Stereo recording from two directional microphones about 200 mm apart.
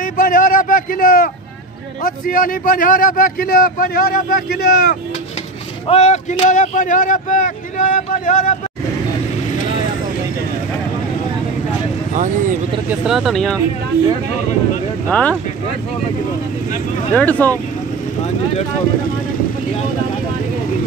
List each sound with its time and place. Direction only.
0.0 s a man's voice: 45° left (ahead or behind)
5.9 s speech: 35° left (ahead or behind)
12.8 s speech: 5° right (ahead or behind)
15.0 s speech: 5° left (ahead or behind)
17.1 s speech: 10° left (ahead or behind)